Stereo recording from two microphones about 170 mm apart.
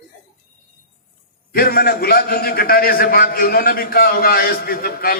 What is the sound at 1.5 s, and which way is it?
A man's voice, 65° left (ahead or behind).